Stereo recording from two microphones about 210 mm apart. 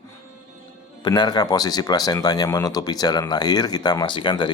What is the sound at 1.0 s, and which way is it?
Speech, 20° left (ahead or behind).